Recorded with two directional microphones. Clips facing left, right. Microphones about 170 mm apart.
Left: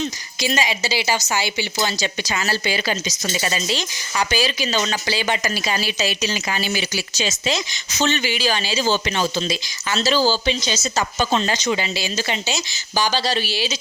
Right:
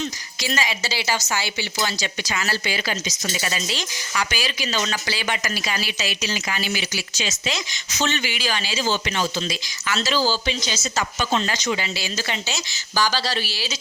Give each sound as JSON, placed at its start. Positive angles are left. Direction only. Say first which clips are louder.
{"t": 0.4, "sound": "a woman's voice", "louder": "left 4 dB", "side_deg": 20}